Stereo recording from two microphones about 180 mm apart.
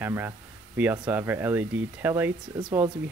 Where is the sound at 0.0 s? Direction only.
10° right (ahead or behind).